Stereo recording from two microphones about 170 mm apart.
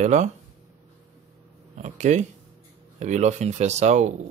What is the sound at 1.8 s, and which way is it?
Speech, 45° right (ahead or behind).